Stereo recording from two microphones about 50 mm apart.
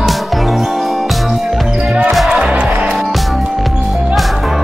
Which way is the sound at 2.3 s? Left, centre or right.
Right.